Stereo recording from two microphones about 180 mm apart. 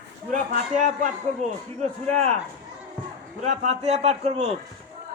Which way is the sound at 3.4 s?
40° right (ahead or behind).